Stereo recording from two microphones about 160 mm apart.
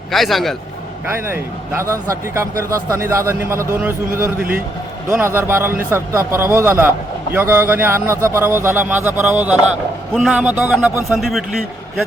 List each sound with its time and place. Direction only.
0.1 s a man's voice: centre (ahead or behind)
1.1 s speech: 15° right (ahead or behind)
5.1 s speech: 15° right (ahead or behind)
11.2 s a man's voice: centre (ahead or behind)